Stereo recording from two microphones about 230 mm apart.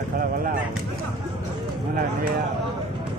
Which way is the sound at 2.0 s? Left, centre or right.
Right.